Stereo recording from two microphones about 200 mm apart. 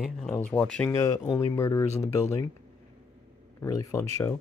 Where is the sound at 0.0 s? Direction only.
5° left (ahead or behind).